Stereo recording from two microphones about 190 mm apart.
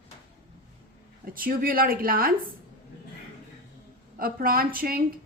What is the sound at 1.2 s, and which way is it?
Speech, 50° right (ahead or behind).